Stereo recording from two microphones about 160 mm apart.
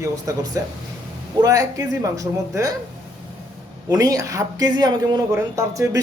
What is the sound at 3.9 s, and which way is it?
A woman's voice, 20° right (ahead or behind).